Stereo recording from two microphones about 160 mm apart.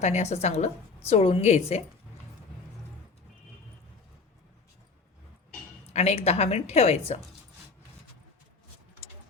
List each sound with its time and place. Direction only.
0.0 s a woman's voice: 45° left (ahead or behind)
5.9 s a woman's voice: 45° left (ahead or behind)